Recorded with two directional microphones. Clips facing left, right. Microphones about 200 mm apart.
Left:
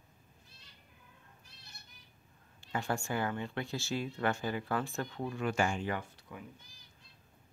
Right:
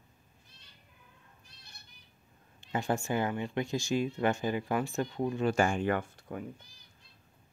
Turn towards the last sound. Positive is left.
turn(degrees=-50)  # may be behind; listen again after turning